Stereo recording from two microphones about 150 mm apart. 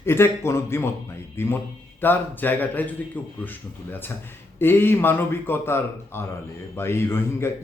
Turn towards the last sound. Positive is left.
turn(degrees=15)  # may be behind; listen again after turning